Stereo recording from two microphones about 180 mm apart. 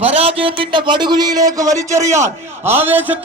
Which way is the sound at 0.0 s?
35° right (ahead or behind).